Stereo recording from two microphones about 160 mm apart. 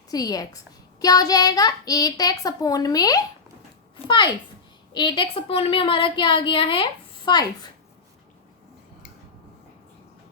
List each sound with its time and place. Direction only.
0.1 s a child's voice: 25° left (ahead or behind)